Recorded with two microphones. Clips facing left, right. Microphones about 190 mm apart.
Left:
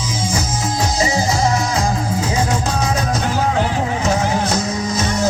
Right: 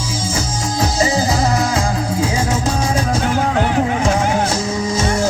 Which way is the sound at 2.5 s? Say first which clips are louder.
Right 1 dB; 30° right (ahead or behind).